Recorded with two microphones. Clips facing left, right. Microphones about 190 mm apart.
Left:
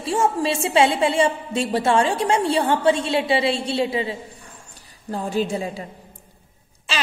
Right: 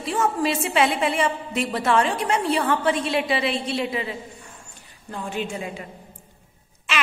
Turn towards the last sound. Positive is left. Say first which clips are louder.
# even
turn(degrees=30)  # may be behind; listen again after turning